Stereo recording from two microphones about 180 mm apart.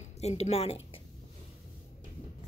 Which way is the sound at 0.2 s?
35° left (ahead or behind).